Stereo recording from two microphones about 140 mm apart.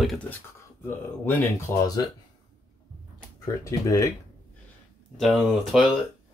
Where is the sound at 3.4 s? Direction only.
25° left (ahead or behind).